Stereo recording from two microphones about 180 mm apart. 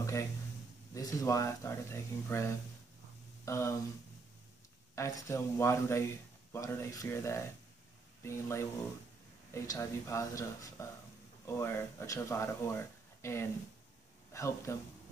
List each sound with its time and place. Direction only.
0.0 s a sound: 15° left (ahead or behind)
0.9 s speech: 20° left (ahead or behind)
4.9 s speech: 15° left (ahead or behind)